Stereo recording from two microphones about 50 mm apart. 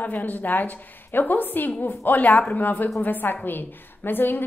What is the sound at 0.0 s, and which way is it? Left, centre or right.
A woman's voice, left.